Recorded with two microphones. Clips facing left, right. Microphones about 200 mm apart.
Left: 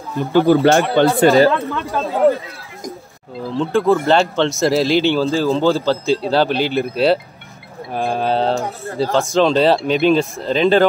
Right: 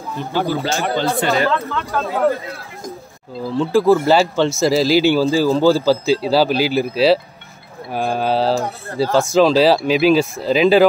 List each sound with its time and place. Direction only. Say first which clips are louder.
0.2 s speech: left 9 dB; 55° left (ahead or behind)
1.2 s speech: left 9 dB; 35° left (ahead or behind)
1.5 s speech: left 1 dB; 15° left (ahead or behind)
3.5 s speech: right 2 dB; centre (ahead or behind)